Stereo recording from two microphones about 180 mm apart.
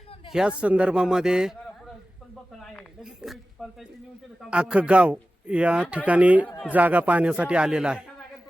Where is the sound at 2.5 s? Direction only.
5° left (ahead or behind).